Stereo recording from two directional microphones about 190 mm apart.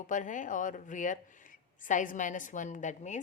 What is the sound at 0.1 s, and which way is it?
A woman's voice, 40° left (ahead or behind).